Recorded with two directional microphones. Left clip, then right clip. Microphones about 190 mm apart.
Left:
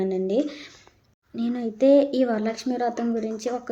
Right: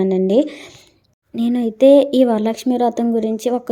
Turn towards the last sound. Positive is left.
turn(degrees=-30)  # may be behind; listen again after turning